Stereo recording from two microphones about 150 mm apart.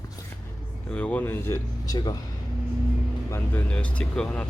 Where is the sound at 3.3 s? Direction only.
10° left (ahead or behind).